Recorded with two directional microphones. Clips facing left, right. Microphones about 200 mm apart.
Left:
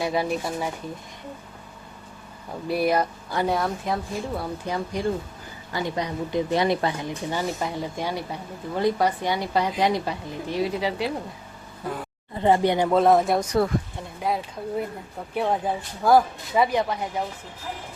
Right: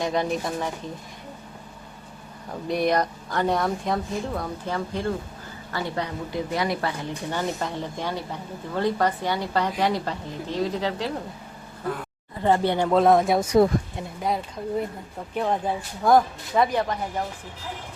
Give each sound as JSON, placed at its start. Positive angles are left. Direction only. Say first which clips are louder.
{"t": 0.0, "sound": "a woman's voice", "louder": "even", "side_deg": 5}
{"t": 2.6, "sound": "speech", "louder": "even", "side_deg": 5}
{"t": 4.6, "sound": "a woman's voice", "louder": "left 2 dB", "side_deg": 15}
{"t": 12.4, "sound": "a woman's voice", "louder": "left 2 dB", "side_deg": 15}
{"t": 12.9, "sound": "speech", "louder": "right 2 dB", "side_deg": 0}